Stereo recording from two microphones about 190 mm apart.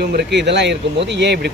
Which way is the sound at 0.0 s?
60° right (ahead or behind).